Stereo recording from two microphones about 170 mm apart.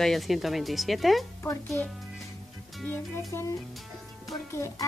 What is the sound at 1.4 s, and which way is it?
A woman's voice, 15° left (ahead or behind).